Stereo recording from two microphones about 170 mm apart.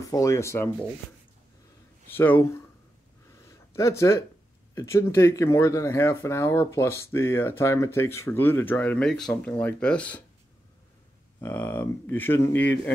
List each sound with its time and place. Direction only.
0.1 s speech: 20° left (ahead or behind)
2.0 s speech: 10° left (ahead or behind)
3.3 s a sound: 15° left (ahead or behind)
4.7 s speech: 15° left (ahead or behind)
11.4 s speech: 10° left (ahead or behind)